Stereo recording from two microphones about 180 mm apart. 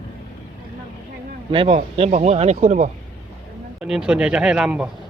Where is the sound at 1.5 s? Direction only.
30° right (ahead or behind).